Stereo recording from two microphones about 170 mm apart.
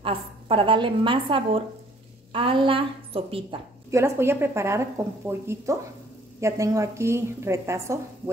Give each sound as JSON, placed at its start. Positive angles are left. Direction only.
{"t": 0.0, "sound": "a woman's voice", "side_deg": -30}
{"t": 3.9, "sound": "a woman's voice", "side_deg": -15}